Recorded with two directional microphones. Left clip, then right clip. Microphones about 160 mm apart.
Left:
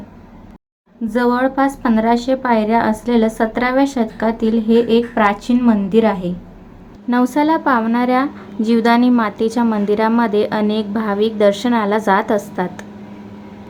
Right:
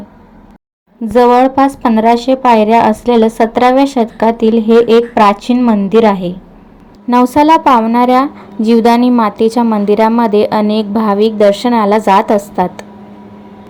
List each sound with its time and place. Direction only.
1.0 s a woman's voice: 20° right (ahead or behind)
7.3 s a woman's voice: 25° right (ahead or behind)